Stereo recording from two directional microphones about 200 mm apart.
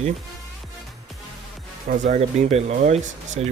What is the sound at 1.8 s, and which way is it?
Speech, 40° right (ahead or behind).